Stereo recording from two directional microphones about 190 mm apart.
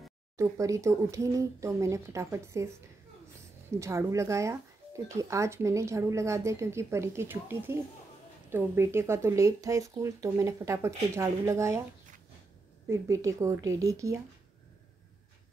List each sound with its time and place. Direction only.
0.4 s speech: 15° right (ahead or behind)
3.8 s speech: 15° right (ahead or behind)
12.9 s speech: 15° right (ahead or behind)